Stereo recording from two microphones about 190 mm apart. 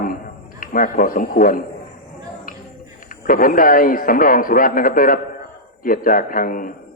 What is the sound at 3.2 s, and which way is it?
A man's voice, 45° left (ahead or behind).